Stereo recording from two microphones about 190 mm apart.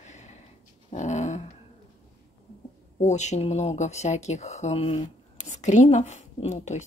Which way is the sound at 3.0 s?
35° left (ahead or behind).